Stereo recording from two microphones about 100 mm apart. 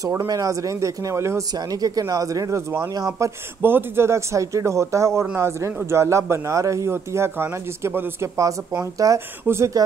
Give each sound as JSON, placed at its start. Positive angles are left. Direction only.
{"t": 0.0, "sound": "speech", "side_deg": -30}
{"t": 1.5, "sound": "speech", "side_deg": -40}
{"t": 3.6, "sound": "speech", "side_deg": -25}
{"t": 8.9, "sound": "speech", "side_deg": -35}